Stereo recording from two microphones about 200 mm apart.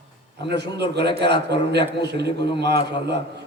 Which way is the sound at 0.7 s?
55° right (ahead or behind).